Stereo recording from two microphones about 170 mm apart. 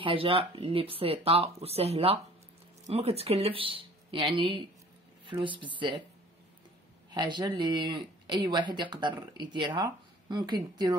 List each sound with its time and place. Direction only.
0.0 s speech: 30° right (ahead or behind)
7.1 s speech: 25° right (ahead or behind)